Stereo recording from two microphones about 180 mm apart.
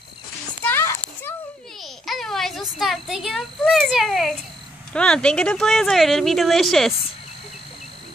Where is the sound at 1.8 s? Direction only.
Centre (ahead or behind).